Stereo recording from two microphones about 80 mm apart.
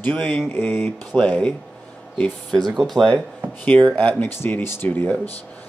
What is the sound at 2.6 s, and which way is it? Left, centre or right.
Speech, centre.